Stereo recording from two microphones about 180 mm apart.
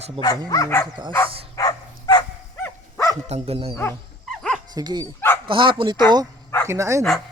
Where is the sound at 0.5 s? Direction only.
15° left (ahead or behind).